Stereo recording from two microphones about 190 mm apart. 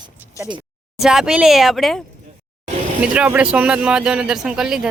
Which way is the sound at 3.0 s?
5° right (ahead or behind).